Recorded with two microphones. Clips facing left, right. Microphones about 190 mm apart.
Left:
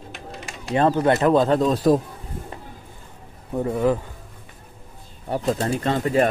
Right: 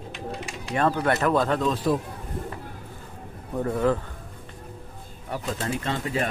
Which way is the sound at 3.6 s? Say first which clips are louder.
Left 2 dB; 15° left (ahead or behind).